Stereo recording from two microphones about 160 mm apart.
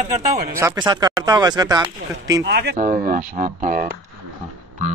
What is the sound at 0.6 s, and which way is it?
Speech, 25° right (ahead or behind).